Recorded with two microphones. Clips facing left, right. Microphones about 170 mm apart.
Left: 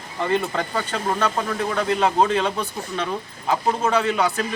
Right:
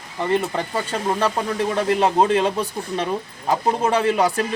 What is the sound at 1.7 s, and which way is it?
Speech, 30° right (ahead or behind).